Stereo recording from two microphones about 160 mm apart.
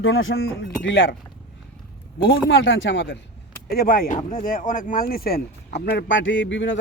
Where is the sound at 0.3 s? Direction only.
90° left.